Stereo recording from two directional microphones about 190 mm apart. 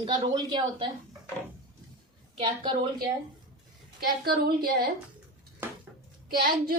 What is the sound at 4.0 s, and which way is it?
Speech, 55° right (ahead or behind).